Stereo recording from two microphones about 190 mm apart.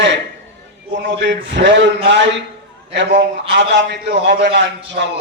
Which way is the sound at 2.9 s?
65° right (ahead or behind).